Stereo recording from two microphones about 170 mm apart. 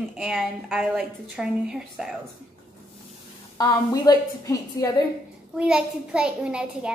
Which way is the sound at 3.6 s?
25° left (ahead or behind).